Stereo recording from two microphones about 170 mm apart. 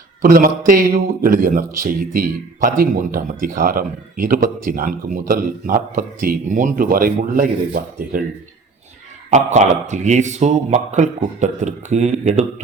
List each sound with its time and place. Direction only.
0.2 s a man's voice: 55° right (ahead or behind)
9.3 s speech: 45° right (ahead or behind)